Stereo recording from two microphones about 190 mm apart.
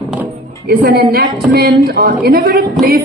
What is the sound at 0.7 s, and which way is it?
A man's voice, 55° right (ahead or behind).